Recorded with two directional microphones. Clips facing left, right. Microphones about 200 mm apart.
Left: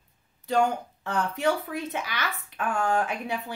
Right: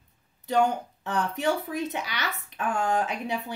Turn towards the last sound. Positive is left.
turn(degrees=-20)  # may be behind; listen again after turning